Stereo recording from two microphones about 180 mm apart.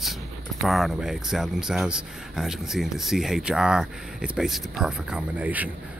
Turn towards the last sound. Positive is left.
turn(degrees=-10)  # may be behind; listen again after turning